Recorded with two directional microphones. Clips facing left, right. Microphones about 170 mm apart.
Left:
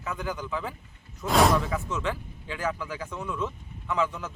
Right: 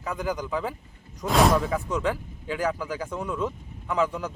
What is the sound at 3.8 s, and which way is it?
Speech, 35° right (ahead or behind).